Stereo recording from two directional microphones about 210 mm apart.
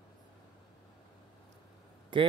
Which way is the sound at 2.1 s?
20° right (ahead or behind).